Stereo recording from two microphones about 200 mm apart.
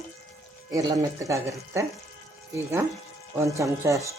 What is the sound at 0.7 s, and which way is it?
Speech, 15° right (ahead or behind).